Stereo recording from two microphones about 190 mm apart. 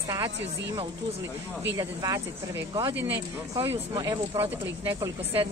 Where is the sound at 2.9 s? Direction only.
70° right (ahead or behind).